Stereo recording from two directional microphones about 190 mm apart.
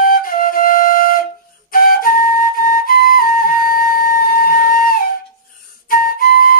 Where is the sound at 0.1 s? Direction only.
50° left (ahead or behind).